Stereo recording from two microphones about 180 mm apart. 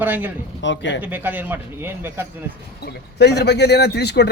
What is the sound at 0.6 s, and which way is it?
Speech, 85° left.